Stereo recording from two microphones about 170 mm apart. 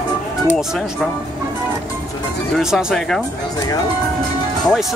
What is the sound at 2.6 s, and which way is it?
Speech, 5° right (ahead or behind).